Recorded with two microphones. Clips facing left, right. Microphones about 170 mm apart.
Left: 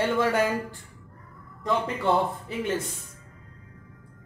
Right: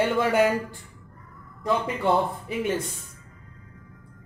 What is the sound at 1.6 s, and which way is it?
Speech, 10° right (ahead or behind).